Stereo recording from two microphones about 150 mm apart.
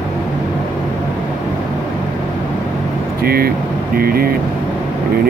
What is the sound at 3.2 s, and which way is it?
Speech, 90° right.